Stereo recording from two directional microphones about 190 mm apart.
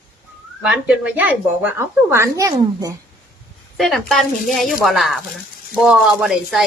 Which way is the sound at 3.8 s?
Centre (ahead or behind).